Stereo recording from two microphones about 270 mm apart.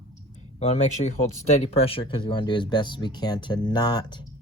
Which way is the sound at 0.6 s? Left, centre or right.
Left.